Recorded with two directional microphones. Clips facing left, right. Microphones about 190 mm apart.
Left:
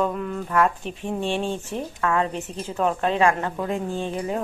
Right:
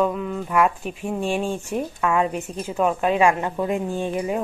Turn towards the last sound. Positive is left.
turn(degrees=-15)  # may be behind; listen again after turning